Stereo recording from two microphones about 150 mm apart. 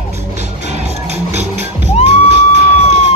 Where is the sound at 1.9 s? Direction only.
45° left (ahead or behind).